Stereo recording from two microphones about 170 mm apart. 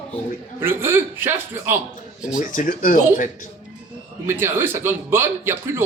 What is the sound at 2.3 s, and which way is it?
Speech, 50° left (ahead or behind).